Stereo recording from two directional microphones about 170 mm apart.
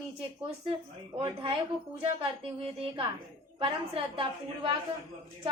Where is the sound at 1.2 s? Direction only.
30° right (ahead or behind).